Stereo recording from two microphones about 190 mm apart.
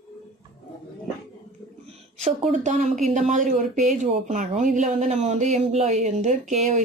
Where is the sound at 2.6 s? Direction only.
40° right (ahead or behind).